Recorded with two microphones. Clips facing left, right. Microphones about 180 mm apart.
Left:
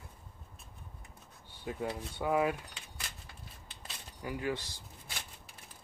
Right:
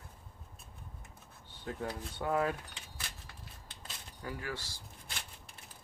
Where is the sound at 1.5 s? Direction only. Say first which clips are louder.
Left 2 dB; 10° left (ahead or behind).